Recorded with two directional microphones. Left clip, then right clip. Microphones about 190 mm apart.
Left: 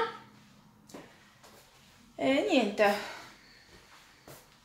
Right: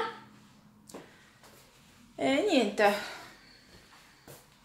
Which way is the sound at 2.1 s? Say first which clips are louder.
Even; 10° right (ahead or behind).